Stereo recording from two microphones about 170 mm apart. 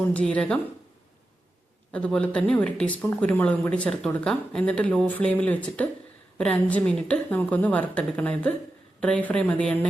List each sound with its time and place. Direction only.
0.1 s speech: 5° left (ahead or behind)
1.9 s speech: 5° left (ahead or behind)